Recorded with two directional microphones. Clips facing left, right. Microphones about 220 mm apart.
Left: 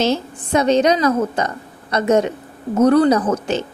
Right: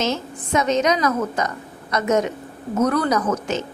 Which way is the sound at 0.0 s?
30° left (ahead or behind).